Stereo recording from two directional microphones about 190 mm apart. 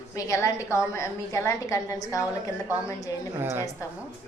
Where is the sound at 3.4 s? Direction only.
10° right (ahead or behind).